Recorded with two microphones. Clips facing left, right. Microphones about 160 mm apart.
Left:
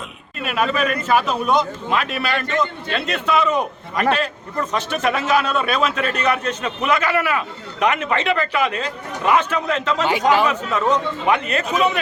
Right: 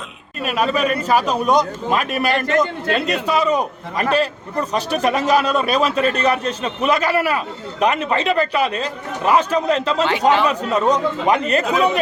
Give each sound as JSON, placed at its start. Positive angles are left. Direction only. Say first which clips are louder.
{"t": 0.4, "sound": "a man's voice", "louder": "right 2 dB", "side_deg": -40}